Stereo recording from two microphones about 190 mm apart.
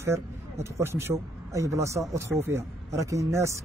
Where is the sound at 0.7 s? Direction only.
15° right (ahead or behind).